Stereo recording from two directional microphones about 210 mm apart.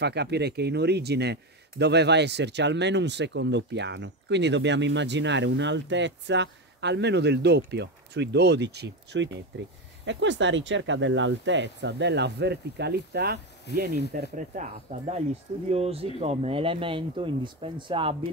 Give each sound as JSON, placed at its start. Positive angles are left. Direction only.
{"t": 0.0, "sound": "speech", "side_deg": -50}
{"t": 13.7, "sound": "speech", "side_deg": 55}
{"t": 14.1, "sound": "speech", "side_deg": -40}